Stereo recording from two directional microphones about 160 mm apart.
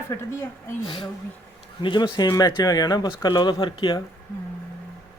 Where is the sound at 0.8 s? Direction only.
30° left (ahead or behind).